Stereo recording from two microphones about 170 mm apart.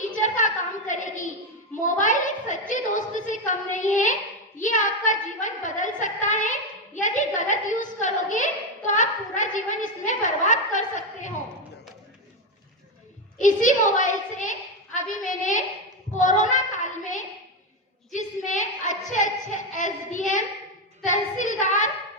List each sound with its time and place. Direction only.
0.0 s a sound: 50° left (ahead or behind)
1.8 s a woman's voice: 50° left (ahead or behind)
13.4 s a woman's voice: 50° left (ahead or behind)
16.1 s child singing: 45° left (ahead or behind)
18.1 s a woman's voice: 45° left (ahead or behind)